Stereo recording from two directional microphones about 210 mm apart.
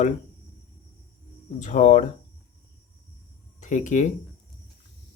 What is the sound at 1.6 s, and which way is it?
Speech, 35° left (ahead or behind).